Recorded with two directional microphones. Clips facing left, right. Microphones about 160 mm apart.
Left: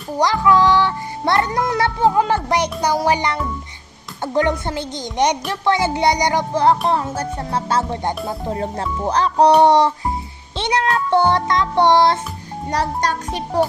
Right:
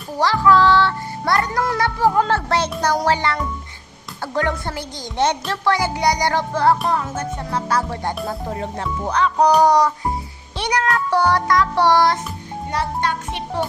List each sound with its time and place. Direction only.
0.2 s a child's voice: 15° left (ahead or behind)
12.7 s a child's voice: 40° left (ahead or behind)